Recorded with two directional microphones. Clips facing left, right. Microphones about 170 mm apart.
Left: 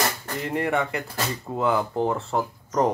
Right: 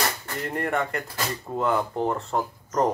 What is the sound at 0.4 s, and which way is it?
Speech, 5° left (ahead or behind).